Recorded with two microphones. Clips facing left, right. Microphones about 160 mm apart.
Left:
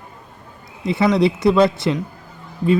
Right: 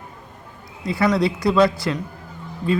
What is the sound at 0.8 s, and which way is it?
Speech, 25° left (ahead or behind).